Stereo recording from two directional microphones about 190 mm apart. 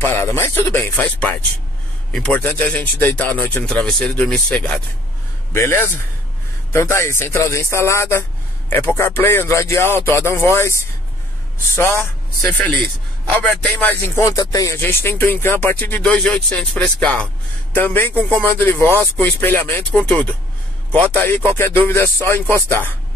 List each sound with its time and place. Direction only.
0.0 s a man's voice: 15° left (ahead or behind)